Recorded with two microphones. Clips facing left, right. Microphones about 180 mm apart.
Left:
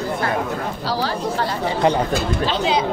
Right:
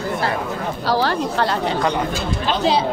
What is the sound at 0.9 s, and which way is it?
Speech, 65° right (ahead or behind).